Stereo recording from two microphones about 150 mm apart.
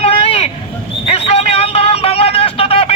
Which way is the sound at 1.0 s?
40° left (ahead or behind).